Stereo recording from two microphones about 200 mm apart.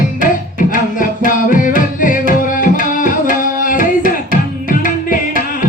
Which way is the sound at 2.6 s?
45° left (ahead or behind).